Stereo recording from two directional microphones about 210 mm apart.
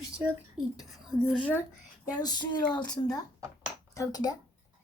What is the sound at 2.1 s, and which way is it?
Speech, 20° left (ahead or behind).